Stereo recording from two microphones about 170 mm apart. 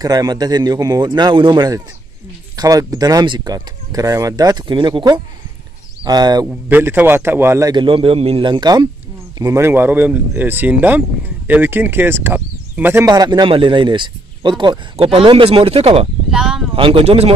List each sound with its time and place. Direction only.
0.0 s speech: 20° right (ahead or behind)
6.4 s speech: 10° right (ahead or behind); by 16.1 s 35° right (ahead or behind)
16.3 s speech: 5° right (ahead or behind)
16.7 s speech: 30° right (ahead or behind)